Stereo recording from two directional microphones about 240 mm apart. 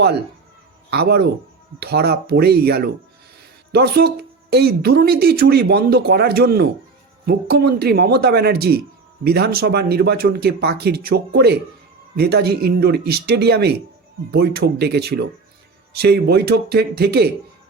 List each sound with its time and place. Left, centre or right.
0.9 s speech: right